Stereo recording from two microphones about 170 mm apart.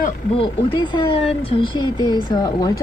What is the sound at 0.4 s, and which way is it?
Speech, 30° left (ahead or behind).